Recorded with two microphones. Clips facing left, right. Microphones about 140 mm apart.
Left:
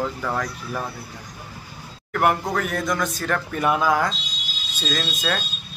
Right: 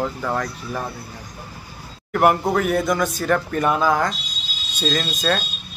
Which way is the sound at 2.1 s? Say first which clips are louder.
Right 4 dB; 5° right (ahead or behind).